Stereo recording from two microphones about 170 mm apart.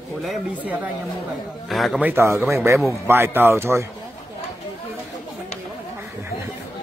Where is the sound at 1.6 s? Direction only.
Centre (ahead or behind).